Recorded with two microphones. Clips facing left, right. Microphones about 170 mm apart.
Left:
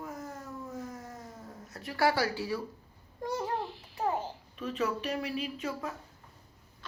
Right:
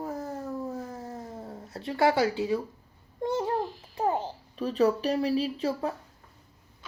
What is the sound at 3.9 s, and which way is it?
A child's voice, 30° right (ahead or behind).